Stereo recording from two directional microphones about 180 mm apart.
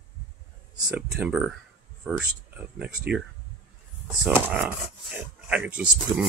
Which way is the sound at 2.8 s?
5° right (ahead or behind).